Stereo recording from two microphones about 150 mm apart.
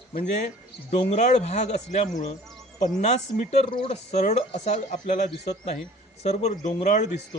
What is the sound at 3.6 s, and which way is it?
A man's voice, 40° left (ahead or behind).